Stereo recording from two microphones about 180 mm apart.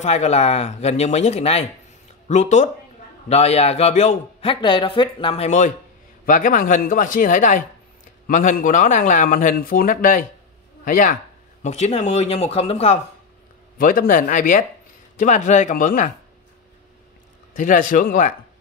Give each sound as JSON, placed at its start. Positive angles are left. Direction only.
{"t": 0.0, "sound": "a man's voice", "side_deg": 35}
{"t": 6.2, "sound": "a man's voice", "side_deg": 50}
{"t": 13.7, "sound": "speech", "side_deg": 50}
{"t": 17.6, "sound": "speech", "side_deg": 45}